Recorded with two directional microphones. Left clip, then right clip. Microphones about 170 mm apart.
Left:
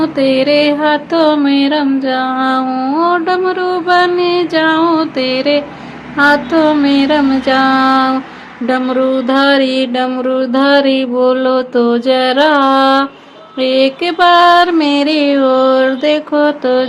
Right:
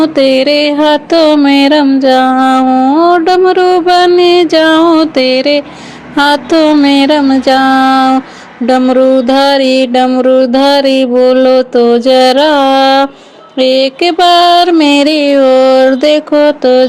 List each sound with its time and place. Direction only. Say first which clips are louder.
0.0 s music: right 5 dB; 40° right (ahead or behind)